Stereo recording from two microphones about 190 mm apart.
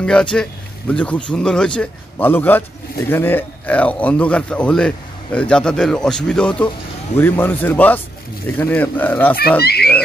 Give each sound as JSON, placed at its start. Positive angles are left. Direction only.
{"t": 0.0, "sound": "speech", "side_deg": 5}
{"t": 9.6, "sound": "a child's voice", "side_deg": 55}